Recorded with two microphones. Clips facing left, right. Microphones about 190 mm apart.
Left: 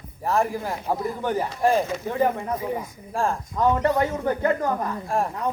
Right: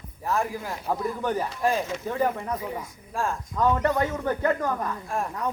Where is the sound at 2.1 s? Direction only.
25° left (ahead or behind).